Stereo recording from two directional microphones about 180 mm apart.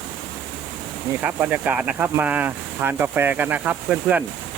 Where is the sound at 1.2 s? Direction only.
10° right (ahead or behind).